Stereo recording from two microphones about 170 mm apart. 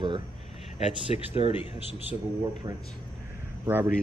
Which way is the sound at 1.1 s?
40° left (ahead or behind).